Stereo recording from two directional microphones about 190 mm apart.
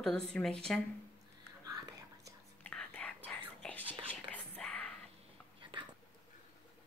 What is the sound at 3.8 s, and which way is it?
Whispering, 30° right (ahead or behind).